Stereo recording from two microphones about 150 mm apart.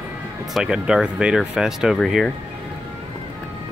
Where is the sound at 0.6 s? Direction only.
5° right (ahead or behind).